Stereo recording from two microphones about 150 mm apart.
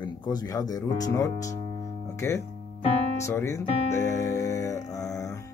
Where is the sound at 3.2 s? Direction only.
20° left (ahead or behind).